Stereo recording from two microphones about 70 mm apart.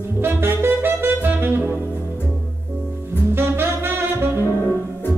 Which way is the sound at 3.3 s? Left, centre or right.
Right.